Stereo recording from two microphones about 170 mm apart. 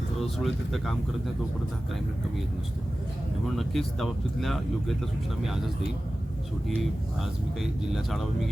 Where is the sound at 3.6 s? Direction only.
Centre (ahead or behind).